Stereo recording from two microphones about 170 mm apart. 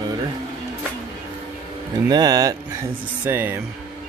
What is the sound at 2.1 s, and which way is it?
Speech, 20° right (ahead or behind).